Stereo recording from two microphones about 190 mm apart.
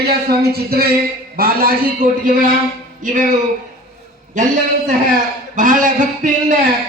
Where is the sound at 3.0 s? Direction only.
45° right (ahead or behind).